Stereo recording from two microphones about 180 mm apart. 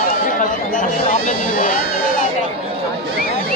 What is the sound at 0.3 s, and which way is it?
Chatter, 45° left (ahead or behind).